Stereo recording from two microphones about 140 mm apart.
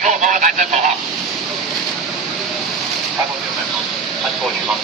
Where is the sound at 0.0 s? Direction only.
65° right (ahead or behind).